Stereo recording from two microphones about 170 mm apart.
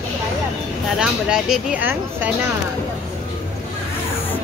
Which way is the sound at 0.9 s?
5° right (ahead or behind).